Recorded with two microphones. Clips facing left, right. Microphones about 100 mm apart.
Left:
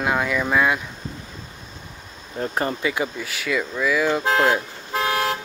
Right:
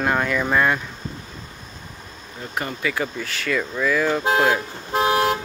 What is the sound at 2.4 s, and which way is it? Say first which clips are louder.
Speech: left 5 dB; 35° left (ahead or behind).